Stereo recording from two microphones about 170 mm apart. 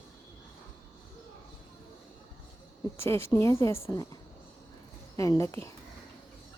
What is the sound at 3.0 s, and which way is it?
A woman's voice, 15° left (ahead or behind).